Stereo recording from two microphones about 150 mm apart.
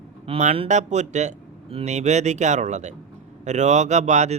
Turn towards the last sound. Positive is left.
turn(degrees=-50)  # may be behind; listen again after turning